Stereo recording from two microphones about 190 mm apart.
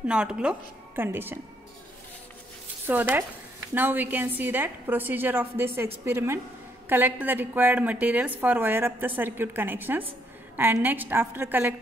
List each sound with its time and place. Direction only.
0.0 s a woman's voice: 5° right (ahead or behind)
2.9 s a woman's voice: 10° right (ahead or behind)